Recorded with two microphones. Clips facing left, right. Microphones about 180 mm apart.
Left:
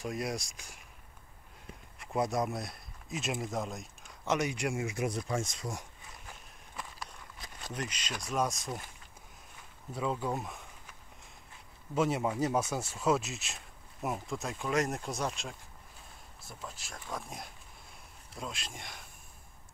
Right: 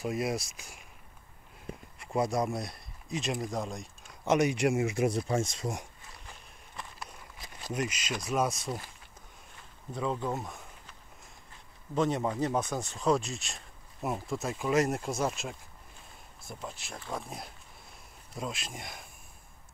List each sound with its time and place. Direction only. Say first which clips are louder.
0.0 s speech: right 4 dB; 5° right (ahead or behind)
2.0 s speech: right 2 dB; centre (ahead or behind)
4.2 s speech: right 6 dB; 20° right (ahead or behind)
7.3 s speech: right 6 dB; 5° right (ahead or behind)
9.9 s speech: right 1 dB; 5° left (ahead or behind)